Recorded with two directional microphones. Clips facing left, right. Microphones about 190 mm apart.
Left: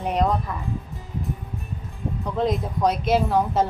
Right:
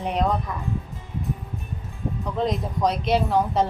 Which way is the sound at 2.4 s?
Centre (ahead or behind).